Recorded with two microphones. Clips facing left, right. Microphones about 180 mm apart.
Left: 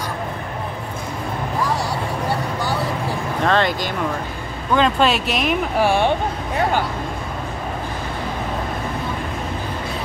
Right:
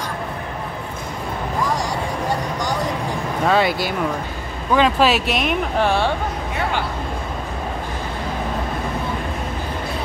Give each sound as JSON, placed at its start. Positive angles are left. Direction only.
{"t": 3.4, "sound": "speech", "side_deg": -10}
{"t": 5.9, "sound": "speech", "side_deg": 15}